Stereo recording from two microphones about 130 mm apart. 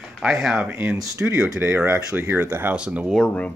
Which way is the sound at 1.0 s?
25° right (ahead or behind).